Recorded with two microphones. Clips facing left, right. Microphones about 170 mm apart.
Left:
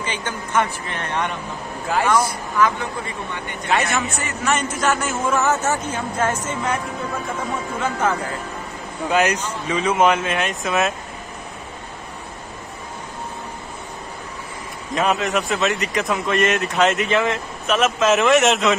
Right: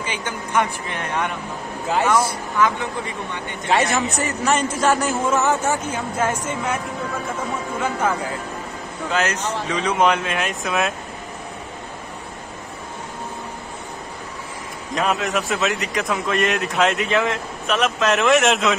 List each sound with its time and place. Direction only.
0.0 s a woman's voice: 10° right (ahead or behind)
2.1 s a man's voice: 25° right (ahead or behind)
5.3 s a woman's voice: 15° right (ahead or behind)
9.1 s a man's voice: 15° left (ahead or behind); by 10.9 s centre (ahead or behind)
15.0 s a man's voice: centre (ahead or behind)